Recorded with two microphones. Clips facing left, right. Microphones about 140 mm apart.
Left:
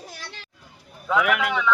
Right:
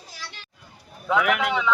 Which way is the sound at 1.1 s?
Centre (ahead or behind).